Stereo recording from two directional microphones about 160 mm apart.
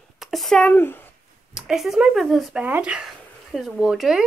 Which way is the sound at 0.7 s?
15° left (ahead or behind).